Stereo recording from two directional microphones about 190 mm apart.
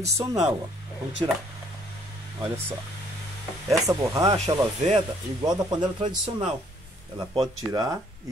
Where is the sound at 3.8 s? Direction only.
20° right (ahead or behind).